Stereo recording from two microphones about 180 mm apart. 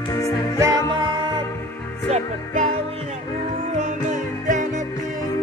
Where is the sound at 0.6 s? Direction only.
20° right (ahead or behind).